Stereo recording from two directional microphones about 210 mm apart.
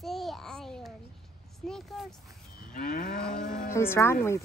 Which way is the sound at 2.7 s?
40° left (ahead or behind).